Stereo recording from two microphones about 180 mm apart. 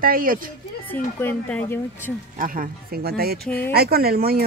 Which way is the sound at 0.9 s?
10° left (ahead or behind).